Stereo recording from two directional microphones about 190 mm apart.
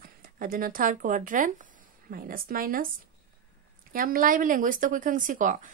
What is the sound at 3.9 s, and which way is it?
A woman's voice, 50° right (ahead or behind).